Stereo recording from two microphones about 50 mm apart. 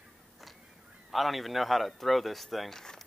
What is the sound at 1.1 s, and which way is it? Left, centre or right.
Speech, centre.